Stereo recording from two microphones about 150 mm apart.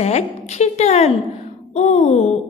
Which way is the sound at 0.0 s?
45° left (ahead or behind).